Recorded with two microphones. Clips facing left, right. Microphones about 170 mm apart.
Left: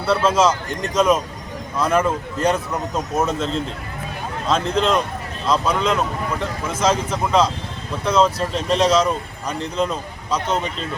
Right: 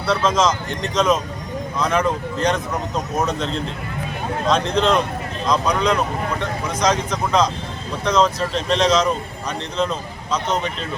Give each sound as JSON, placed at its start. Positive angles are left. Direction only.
{"t": 0.0, "sound": "speech", "side_deg": 5}